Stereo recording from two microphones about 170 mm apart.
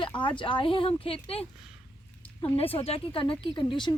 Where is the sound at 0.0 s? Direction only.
30° left (ahead or behind).